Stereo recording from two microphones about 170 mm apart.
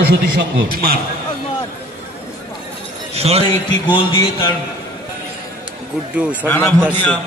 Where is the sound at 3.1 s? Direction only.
35° right (ahead or behind).